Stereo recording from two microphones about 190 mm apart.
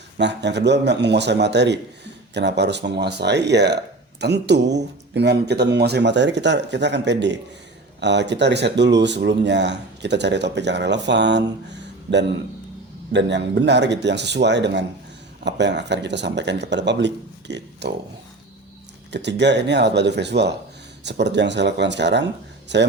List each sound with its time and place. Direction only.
0.2 s speech: 65° right (ahead or behind)
19.1 s speech: 65° right (ahead or behind)